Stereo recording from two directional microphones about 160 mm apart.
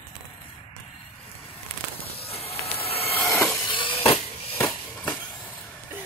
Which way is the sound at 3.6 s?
30° left (ahead or behind).